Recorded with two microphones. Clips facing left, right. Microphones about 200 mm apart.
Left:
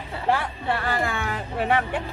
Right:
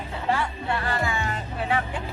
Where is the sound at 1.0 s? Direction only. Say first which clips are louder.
Left 1 dB; 55° left (ahead or behind).